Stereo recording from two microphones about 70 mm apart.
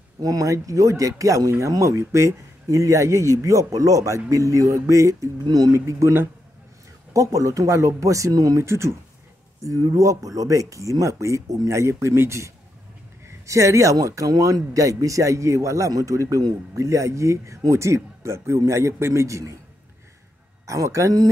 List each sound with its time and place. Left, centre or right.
0.2 s speech: right
5.4 s speech: right
8.6 s speech: right
20.6 s speech: right